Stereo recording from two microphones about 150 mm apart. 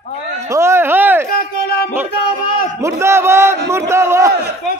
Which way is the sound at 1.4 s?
90° left.